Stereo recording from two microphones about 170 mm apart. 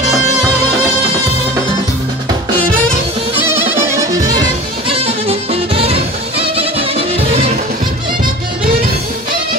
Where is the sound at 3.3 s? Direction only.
15° right (ahead or behind); by 7.4 s 35° right (ahead or behind).